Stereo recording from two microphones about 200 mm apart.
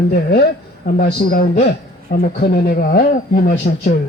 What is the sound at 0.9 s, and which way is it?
Speech, 45° left (ahead or behind).